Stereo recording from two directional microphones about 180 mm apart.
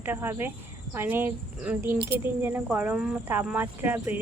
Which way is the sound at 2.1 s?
60° right (ahead or behind).